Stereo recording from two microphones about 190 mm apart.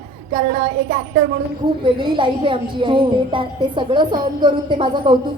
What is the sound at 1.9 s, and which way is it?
A woman's voice, 25° right (ahead or behind).